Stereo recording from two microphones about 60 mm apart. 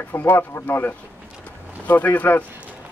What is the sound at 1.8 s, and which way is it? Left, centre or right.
Speech, left.